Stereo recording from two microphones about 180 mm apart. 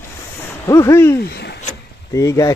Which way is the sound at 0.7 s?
15° left (ahead or behind).